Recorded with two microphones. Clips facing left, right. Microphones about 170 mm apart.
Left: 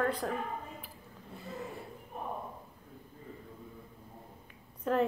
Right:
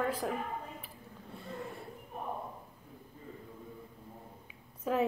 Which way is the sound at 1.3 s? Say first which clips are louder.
Left 1 dB; centre (ahead or behind).